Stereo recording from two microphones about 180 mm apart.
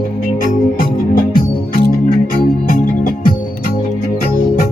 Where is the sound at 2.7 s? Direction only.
50° left (ahead or behind).